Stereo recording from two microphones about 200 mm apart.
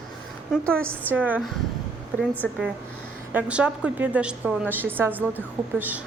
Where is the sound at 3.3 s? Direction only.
5° right (ahead or behind).